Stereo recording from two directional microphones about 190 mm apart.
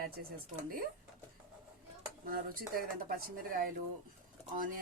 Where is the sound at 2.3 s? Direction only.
50° right (ahead or behind).